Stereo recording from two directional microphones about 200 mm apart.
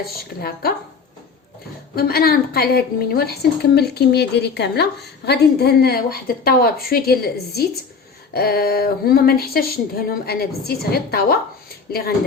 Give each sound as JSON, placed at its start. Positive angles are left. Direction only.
{"t": 0.3, "sound": "a woman's voice", "side_deg": 45}
{"t": 2.0, "sound": "a woman's voice", "side_deg": 50}